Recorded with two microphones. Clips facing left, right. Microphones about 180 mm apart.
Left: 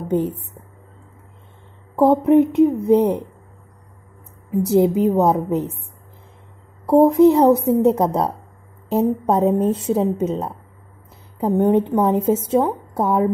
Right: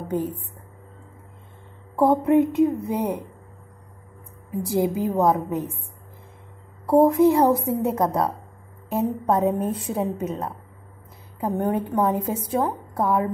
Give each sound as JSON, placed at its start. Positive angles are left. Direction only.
{"t": 2.0, "sound": "a woman's voice", "side_deg": 20}
{"t": 4.6, "sound": "a woman's voice", "side_deg": 25}
{"t": 6.9, "sound": "a woman's voice", "side_deg": 20}